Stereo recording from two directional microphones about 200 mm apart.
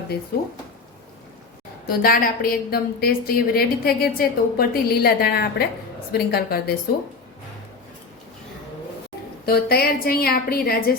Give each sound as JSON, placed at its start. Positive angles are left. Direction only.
{"t": 0.3, "sound": "a woman's voice", "side_deg": 50}
{"t": 1.9, "sound": "a woman's voice", "side_deg": 45}
{"t": 9.5, "sound": "a woman's voice", "side_deg": 50}